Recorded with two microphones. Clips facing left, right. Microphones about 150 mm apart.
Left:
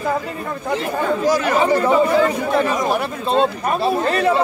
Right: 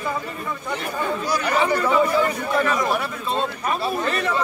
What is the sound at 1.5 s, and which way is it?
Speech, 40° left (ahead or behind).